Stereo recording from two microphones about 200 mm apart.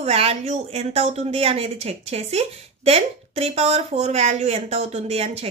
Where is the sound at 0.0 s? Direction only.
30° right (ahead or behind).